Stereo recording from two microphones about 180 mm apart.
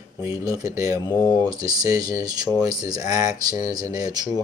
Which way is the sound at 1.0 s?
10° left (ahead or behind).